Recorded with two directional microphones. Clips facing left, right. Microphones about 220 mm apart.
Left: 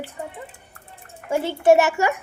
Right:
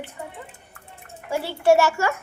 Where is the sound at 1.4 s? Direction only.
20° left (ahead or behind).